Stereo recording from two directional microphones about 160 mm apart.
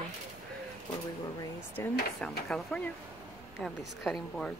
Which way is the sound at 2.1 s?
5° left (ahead or behind).